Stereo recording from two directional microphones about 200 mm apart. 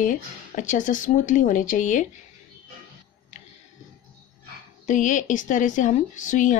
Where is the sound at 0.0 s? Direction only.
40° left (ahead or behind).